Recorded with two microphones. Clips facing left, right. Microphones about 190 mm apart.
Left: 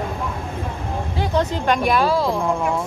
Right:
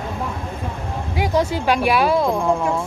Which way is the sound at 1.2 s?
10° right (ahead or behind).